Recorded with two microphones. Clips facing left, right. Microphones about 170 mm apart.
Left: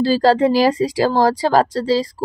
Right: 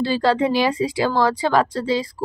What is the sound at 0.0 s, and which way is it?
Speech, 40° left (ahead or behind).